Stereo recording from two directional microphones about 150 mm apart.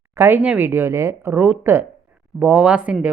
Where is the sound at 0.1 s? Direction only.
15° right (ahead or behind).